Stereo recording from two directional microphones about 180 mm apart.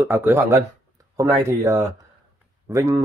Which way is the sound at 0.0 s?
15° right (ahead or behind).